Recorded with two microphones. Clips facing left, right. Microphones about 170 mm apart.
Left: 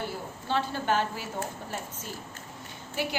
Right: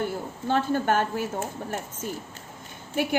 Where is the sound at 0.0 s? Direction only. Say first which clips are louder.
Right 6 dB; 50° right (ahead or behind).